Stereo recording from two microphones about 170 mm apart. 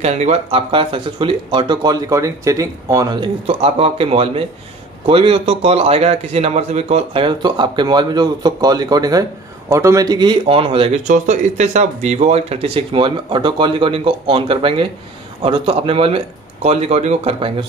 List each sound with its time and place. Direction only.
0.0 s a man's voice: 40° right (ahead or behind); by 3.3 s 20° right (ahead or behind)
3.4 s a man's voice: 35° right (ahead or behind)